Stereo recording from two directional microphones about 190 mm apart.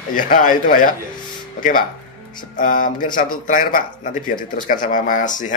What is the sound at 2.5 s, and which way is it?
Speech, 45° left (ahead or behind).